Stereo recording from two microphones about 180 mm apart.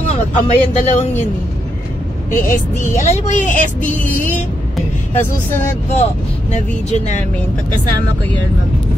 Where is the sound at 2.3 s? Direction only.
45° left (ahead or behind).